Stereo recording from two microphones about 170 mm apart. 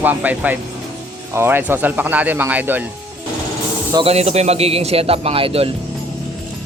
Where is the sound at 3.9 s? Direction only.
30° right (ahead or behind).